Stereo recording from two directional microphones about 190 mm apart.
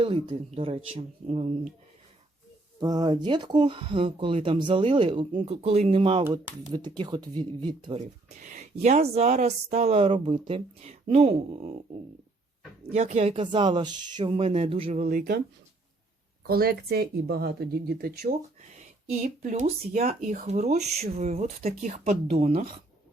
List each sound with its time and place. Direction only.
0.0 s speech: 30° right (ahead or behind)
2.8 s speech: 20° right (ahead or behind)
7.9 s speech: 40° right (ahead or behind)
12.9 s speech: 35° right (ahead or behind)
16.5 s speech: 55° right (ahead or behind)
19.2 s speech: 40° right (ahead or behind)